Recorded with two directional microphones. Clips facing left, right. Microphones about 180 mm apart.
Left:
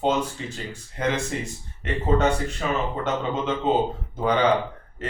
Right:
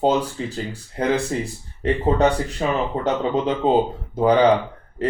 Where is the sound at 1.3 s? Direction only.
35° right (ahead or behind).